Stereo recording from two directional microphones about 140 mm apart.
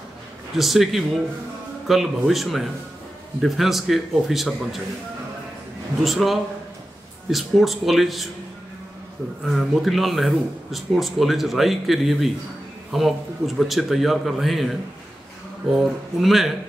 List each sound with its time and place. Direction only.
0.6 s speech: centre (ahead or behind)
6.0 s speech: centre (ahead or behind)
9.5 s speech: centre (ahead or behind)